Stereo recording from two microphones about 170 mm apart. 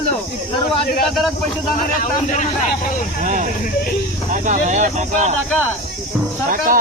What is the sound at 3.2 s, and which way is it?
Speech, 50° right (ahead or behind).